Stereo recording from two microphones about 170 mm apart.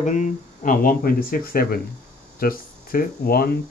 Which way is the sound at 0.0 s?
45° left (ahead or behind).